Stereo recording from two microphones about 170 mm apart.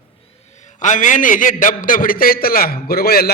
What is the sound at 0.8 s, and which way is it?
A man's voice, 50° left (ahead or behind).